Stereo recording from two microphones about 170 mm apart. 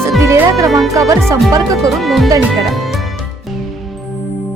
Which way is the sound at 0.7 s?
Centre (ahead or behind).